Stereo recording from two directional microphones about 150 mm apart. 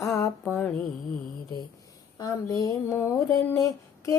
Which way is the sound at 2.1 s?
25° left (ahead or behind).